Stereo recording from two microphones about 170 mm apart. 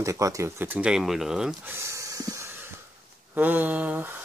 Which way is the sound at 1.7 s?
15° right (ahead or behind).